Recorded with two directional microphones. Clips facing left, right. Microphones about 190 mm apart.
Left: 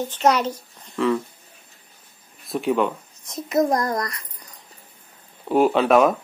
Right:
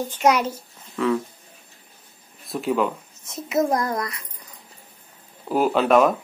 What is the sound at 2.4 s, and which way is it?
A child's voice, centre (ahead or behind).